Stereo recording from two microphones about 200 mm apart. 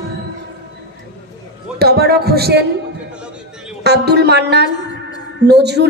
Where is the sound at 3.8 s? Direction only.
55° right (ahead or behind).